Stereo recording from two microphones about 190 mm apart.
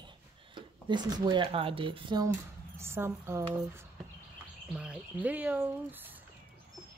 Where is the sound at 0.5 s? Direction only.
25° right (ahead or behind).